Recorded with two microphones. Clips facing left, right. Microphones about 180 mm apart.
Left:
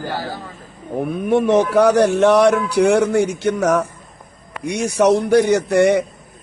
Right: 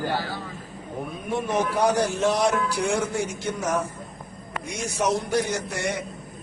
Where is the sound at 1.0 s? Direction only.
65° left (ahead or behind).